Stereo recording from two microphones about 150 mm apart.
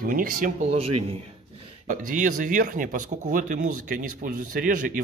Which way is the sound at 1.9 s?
60° right (ahead or behind).